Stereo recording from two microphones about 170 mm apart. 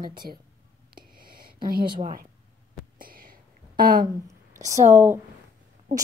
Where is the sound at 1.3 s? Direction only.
60° right (ahead or behind).